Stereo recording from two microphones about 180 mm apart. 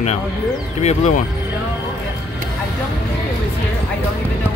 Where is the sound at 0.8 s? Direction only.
40° left (ahead or behind).